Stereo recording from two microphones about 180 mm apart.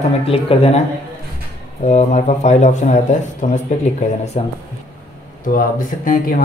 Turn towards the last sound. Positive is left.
turn(degrees=50)  # may be behind; listen again after turning